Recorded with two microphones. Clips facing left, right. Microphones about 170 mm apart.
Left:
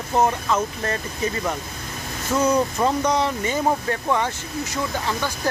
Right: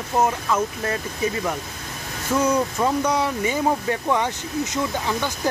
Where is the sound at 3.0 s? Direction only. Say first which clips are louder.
Even; 10° right (ahead or behind).